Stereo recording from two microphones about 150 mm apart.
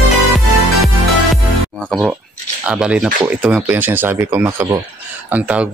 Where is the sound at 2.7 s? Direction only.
5° right (ahead or behind).